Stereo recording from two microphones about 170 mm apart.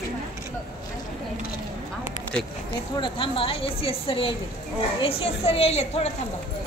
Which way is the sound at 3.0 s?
30° left (ahead or behind).